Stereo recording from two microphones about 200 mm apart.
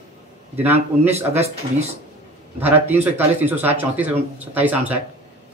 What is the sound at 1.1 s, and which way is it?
Speech, 30° right (ahead or behind).